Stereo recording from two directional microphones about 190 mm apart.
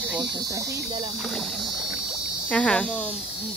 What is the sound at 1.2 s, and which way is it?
Speech, 5° right (ahead or behind).